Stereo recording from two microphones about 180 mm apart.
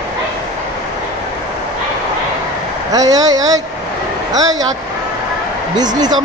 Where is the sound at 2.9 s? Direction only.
20° right (ahead or behind).